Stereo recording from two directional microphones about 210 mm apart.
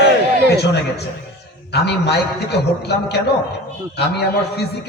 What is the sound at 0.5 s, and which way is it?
A man's voice, 50° left (ahead or behind).